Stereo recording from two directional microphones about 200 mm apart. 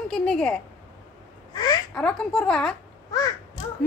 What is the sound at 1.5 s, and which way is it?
Speech, 20° left (ahead or behind).